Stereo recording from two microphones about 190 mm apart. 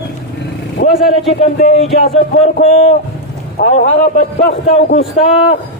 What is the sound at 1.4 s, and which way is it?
A man's voice, 35° left (ahead or behind).